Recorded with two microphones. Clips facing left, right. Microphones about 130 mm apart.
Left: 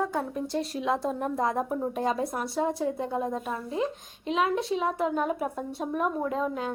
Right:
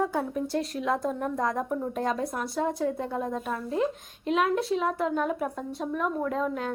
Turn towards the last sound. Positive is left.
turn(degrees=5)  # may be behind; listen again after turning